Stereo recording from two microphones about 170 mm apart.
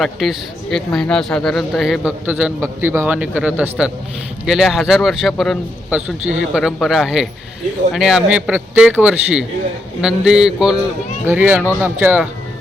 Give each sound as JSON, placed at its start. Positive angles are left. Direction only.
{"t": 0.0, "sound": "a man's voice", "side_deg": 0}